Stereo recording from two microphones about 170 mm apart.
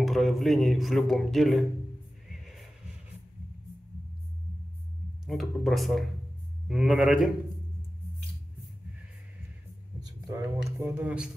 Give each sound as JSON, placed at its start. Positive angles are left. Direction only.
{"t": 0.0, "sound": "speech", "side_deg": 0}
{"t": 2.2, "sound": "music", "side_deg": 0}
{"t": 5.2, "sound": "speech", "side_deg": 0}
{"t": 9.9, "sound": "a sound", "side_deg": -25}
{"t": 10.8, "sound": "speech", "side_deg": -10}